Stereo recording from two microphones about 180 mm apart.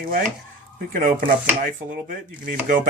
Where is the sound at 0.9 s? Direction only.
50° right (ahead or behind).